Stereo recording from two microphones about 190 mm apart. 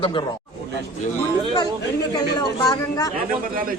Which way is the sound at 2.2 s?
20° left (ahead or behind).